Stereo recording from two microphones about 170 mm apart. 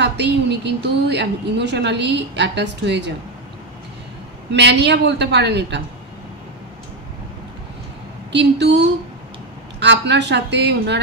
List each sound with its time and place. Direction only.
0.0 s a woman's voice: 90° right
4.5 s a woman's voice: 90° right
8.3 s a woman's voice: 90° right